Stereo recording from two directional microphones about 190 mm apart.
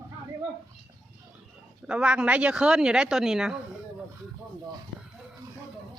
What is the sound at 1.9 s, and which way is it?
A woman's voice, 5° right (ahead or behind).